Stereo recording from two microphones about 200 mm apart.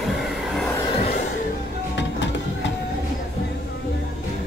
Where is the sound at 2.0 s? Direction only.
65° left (ahead or behind).